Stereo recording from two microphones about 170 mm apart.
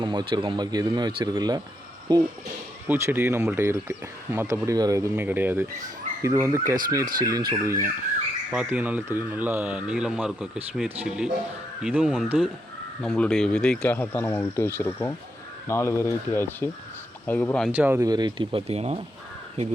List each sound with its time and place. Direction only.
0.0 s speech: 30° right (ahead or behind)
2.8 s speech: 10° right (ahead or behind); by 17.7 s 5° left (ahead or behind)
17.7 s speech: 10° right (ahead or behind)
18.1 s speech: 25° right (ahead or behind)